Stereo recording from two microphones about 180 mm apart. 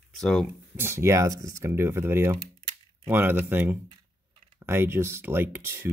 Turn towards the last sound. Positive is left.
turn(degrees=-15)  # may be behind; listen again after turning